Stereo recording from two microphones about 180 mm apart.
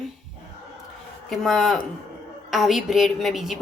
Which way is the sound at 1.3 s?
Centre (ahead or behind).